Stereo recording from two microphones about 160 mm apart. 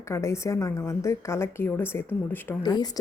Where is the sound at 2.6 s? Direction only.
25° left (ahead or behind).